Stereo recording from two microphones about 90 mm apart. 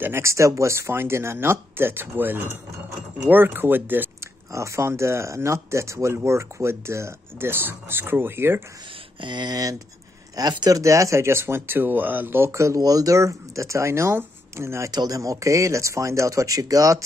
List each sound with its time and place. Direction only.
0.0 s speech: 30° right (ahead or behind)
4.5 s speech: 35° right (ahead or behind)
9.2 s speech: 55° right (ahead or behind); by 14.9 s 30° right (ahead or behind)
14.9 s speech: 45° right (ahead or behind)